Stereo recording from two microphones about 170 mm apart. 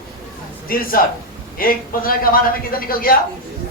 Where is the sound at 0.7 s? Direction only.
55° left (ahead or behind).